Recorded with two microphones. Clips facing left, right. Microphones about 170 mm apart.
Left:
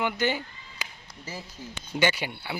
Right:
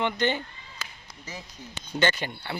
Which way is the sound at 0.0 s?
5° left (ahead or behind).